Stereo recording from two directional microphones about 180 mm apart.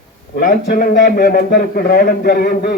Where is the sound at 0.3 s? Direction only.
50° left (ahead or behind).